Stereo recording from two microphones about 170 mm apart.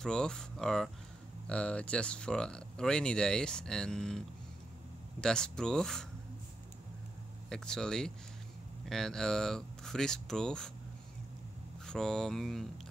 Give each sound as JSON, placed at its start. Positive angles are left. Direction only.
{"t": 0.0, "sound": "speech", "side_deg": 5}
{"t": 5.2, "sound": "speech", "side_deg": 5}
{"t": 7.4, "sound": "speech", "side_deg": 5}
{"t": 11.8, "sound": "speech", "side_deg": 5}